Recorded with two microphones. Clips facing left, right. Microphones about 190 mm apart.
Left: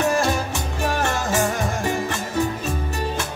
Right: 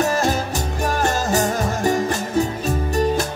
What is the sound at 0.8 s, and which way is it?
Music, 40° right (ahead or behind).